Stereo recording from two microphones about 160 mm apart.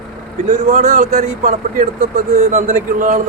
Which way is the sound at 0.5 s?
45° right (ahead or behind).